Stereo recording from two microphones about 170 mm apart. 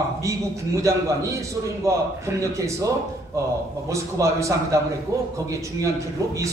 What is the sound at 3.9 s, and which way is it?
A man's voice, 20° right (ahead or behind).